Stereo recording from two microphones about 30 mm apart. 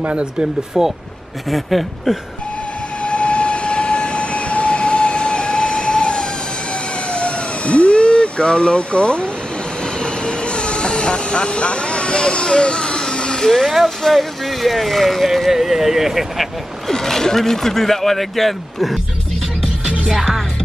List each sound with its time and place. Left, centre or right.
0.1 s speech: right
0.8 s speech: centre
1.5 s speech: centre
3.0 s train: left
7.1 s vehicle: left; by 13.7 s centre
14.1 s speech: centre
15.5 s speech: centre
16.9 s a man's voice: centre